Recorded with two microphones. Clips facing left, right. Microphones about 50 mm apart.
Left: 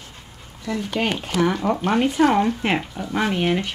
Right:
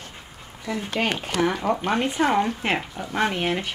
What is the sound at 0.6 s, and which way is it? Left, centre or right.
Speech, centre.